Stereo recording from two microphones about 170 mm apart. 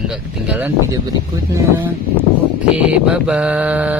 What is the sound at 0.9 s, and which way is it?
Speech, 20° right (ahead or behind).